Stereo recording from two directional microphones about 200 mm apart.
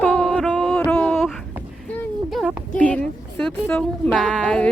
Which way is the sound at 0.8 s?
5° left (ahead or behind).